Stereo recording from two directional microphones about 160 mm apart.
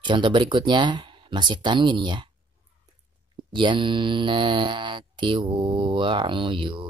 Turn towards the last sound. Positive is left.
turn(degrees=-30)  # may be behind; listen again after turning